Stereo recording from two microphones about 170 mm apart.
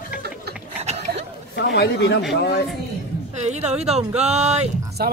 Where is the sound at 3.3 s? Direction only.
40° right (ahead or behind).